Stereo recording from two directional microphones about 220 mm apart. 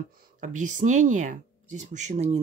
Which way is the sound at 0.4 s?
35° right (ahead or behind).